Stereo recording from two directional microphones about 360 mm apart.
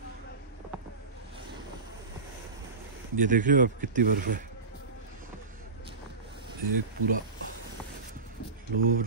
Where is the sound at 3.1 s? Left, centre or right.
Right.